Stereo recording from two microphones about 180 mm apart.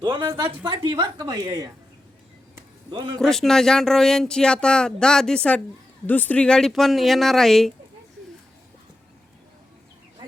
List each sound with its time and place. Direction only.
0.3 s a woman's voice: 25° right (ahead or behind)
2.9 s a woman's voice: 25° right (ahead or behind)
3.2 s speech: centre (ahead or behind)